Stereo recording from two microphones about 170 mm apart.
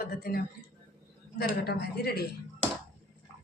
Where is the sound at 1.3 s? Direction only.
75° left (ahead or behind).